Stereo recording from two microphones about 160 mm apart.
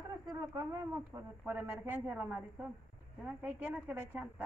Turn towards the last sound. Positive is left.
turn(degrees=-10)  # may be behind; listen again after turning